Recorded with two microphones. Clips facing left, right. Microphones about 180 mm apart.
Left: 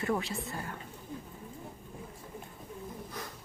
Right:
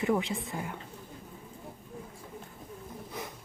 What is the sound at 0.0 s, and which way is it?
Speech, 20° right (ahead or behind).